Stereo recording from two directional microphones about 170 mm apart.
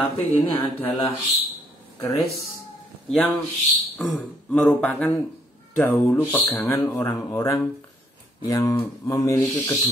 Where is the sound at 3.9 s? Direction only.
10° left (ahead or behind).